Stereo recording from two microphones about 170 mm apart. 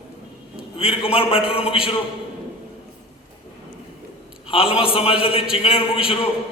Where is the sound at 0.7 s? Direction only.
35° left (ahead or behind).